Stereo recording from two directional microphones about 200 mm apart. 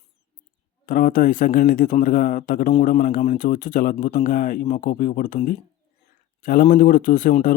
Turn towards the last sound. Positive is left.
turn(degrees=40)  # may be behind; listen again after turning